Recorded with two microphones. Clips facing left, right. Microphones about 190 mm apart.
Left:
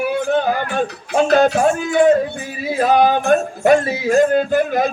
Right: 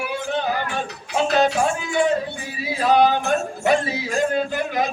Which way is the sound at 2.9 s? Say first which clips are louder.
Left 3 dB; 50° left (ahead or behind).